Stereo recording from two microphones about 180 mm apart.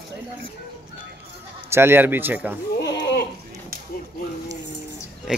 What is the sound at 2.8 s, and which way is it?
Goat, 70° left (ahead or behind).